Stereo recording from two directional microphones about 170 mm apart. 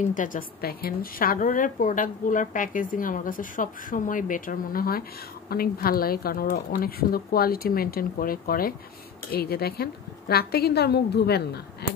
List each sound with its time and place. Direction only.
0.1 s a woman's voice: 50° left (ahead or behind); by 12.0 s 70° left (ahead or behind)